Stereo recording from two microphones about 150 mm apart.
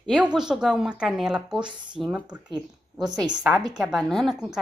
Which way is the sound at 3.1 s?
30° right (ahead or behind).